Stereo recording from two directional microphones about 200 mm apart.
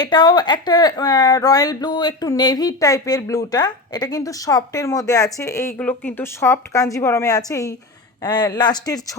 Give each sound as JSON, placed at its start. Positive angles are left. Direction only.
{"t": 0.0, "sound": "speech", "side_deg": 20}